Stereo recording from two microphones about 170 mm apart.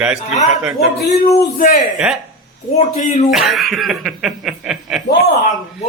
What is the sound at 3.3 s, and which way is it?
A man's voice, centre (ahead or behind).